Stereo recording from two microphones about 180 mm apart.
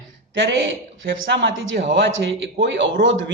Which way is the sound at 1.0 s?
85° right.